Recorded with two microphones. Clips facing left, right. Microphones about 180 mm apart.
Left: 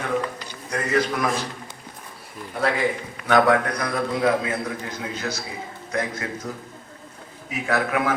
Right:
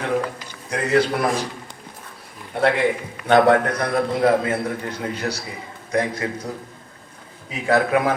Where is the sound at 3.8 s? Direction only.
50° right (ahead or behind).